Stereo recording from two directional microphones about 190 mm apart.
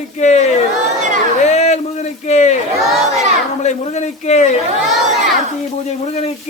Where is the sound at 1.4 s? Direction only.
35° left (ahead or behind).